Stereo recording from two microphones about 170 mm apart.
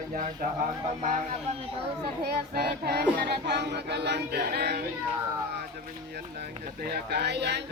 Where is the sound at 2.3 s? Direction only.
70° right (ahead or behind).